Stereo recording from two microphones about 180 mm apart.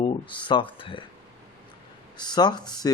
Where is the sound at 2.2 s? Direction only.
25° left (ahead or behind).